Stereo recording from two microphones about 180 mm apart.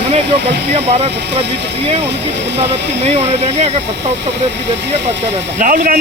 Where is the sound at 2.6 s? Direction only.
35° right (ahead or behind).